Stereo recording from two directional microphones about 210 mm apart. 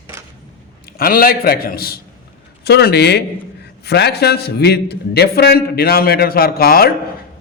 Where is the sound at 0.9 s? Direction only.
45° left (ahead or behind).